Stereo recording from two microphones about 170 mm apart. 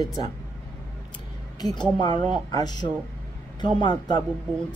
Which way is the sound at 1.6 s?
25° left (ahead or behind).